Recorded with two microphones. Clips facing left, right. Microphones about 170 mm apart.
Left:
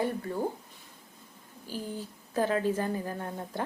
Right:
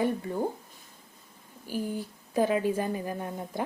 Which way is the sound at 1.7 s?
15° right (ahead or behind).